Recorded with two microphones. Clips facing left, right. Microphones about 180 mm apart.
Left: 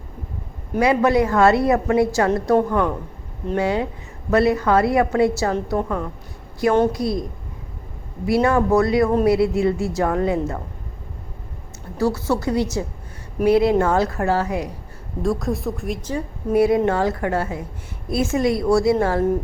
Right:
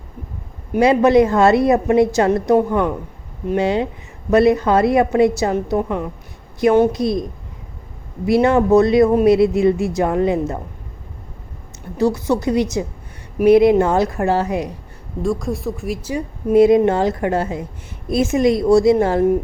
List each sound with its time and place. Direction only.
0.8 s a woman's voice: 25° right (ahead or behind)
8.3 s a woman's voice: 20° right (ahead or behind)
11.9 s a woman's voice: 15° right (ahead or behind)
15.2 s speech: centre (ahead or behind)
16.5 s a woman's voice: 20° right (ahead or behind)